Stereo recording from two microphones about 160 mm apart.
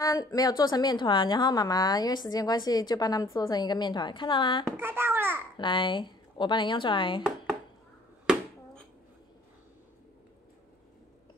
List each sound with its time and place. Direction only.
0.0 s a woman's voice: 20° left (ahead or behind)
4.7 s a child's voice: 15° right (ahead or behind)
5.6 s a woman's voice: 30° left (ahead or behind)